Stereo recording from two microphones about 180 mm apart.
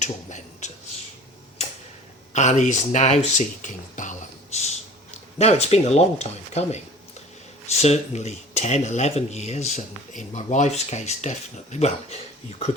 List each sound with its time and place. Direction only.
0.0 s a sound: 40° left (ahead or behind)
2.3 s speech: 40° left (ahead or behind)
5.4 s speech: 35° left (ahead or behind)